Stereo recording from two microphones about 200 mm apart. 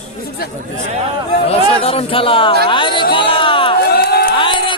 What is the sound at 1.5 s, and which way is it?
Speech, 30° left (ahead or behind).